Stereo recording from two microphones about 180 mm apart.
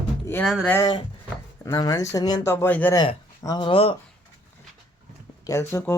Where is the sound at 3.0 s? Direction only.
20° left (ahead or behind).